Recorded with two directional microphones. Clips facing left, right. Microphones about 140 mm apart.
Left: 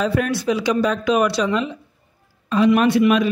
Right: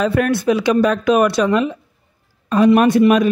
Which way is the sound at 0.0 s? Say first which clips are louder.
Right 4 dB; 60° right (ahead or behind).